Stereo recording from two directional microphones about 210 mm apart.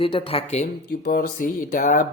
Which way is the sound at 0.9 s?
45° left (ahead or behind).